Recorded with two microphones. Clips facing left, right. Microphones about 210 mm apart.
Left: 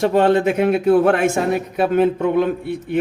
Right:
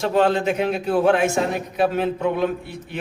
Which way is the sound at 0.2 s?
55° left (ahead or behind).